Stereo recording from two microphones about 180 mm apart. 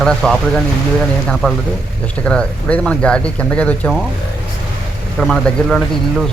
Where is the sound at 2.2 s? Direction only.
5° left (ahead or behind).